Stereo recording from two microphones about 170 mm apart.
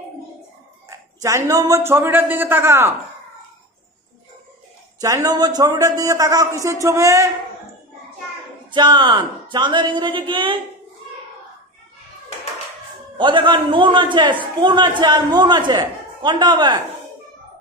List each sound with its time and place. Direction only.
0.8 s a man's voice: 20° right (ahead or behind)
5.0 s a man's voice: 20° right (ahead or behind)
8.7 s a man's voice: 25° right (ahead or behind)
13.2 s a man's voice: 30° right (ahead or behind)